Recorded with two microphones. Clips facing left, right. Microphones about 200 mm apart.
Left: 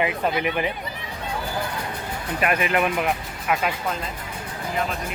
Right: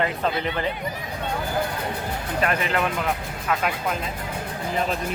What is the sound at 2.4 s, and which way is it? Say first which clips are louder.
Speech: left 2 dB; 15° left (ahead or behind).